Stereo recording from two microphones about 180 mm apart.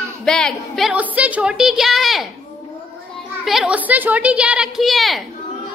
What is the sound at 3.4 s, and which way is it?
A woman's voice, centre (ahead or behind).